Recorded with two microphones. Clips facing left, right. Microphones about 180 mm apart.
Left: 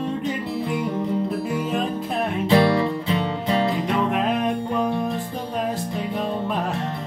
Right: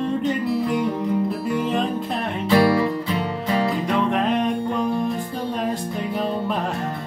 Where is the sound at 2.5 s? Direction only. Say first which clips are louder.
Right 1 dB; 25° left (ahead or behind).